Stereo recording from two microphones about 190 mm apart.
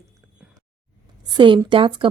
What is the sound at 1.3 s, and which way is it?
Speech, 25° right (ahead or behind).